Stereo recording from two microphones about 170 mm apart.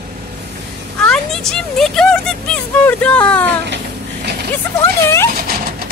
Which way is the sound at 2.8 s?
10° left (ahead or behind).